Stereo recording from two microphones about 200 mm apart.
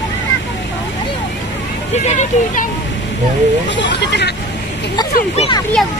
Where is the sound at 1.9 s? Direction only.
35° left (ahead or behind).